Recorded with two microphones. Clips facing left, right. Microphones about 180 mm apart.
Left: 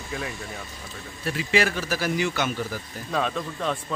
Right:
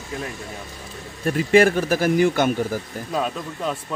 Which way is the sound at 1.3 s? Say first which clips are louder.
Right 8 dB; 50° right (ahead or behind).